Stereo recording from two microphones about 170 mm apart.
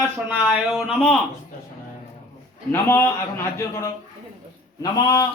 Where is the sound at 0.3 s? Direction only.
5° right (ahead or behind).